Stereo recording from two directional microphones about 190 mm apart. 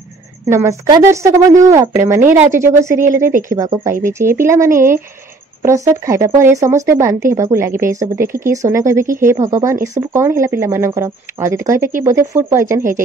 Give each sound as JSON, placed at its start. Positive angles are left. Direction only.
{"t": 0.5, "sound": "speech", "side_deg": -15}